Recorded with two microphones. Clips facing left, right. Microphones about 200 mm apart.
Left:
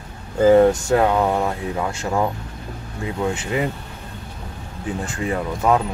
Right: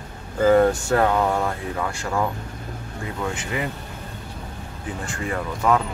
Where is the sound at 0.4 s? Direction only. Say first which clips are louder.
Left 3 dB; 20° left (ahead or behind).